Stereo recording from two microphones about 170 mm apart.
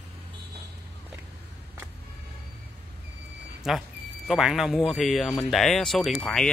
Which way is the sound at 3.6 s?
Centre (ahead or behind).